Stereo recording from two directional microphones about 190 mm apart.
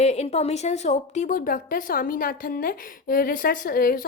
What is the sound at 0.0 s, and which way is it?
A woman's voice, 35° left (ahead or behind).